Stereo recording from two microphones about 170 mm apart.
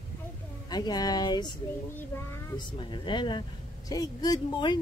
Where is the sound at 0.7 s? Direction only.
25° left (ahead or behind).